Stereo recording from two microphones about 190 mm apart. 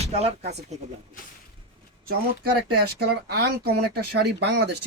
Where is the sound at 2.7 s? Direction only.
55° right (ahead or behind).